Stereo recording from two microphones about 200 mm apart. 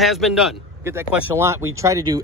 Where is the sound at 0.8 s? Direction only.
10° right (ahead or behind).